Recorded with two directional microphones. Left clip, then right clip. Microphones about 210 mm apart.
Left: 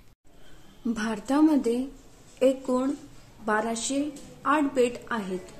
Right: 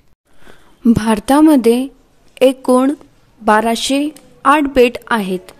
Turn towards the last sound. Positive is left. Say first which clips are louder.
# right 14 dB
turn(degrees=-50)  # may be behind; listen again after turning